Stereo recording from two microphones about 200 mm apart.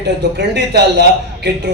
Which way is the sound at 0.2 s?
60° right (ahead or behind).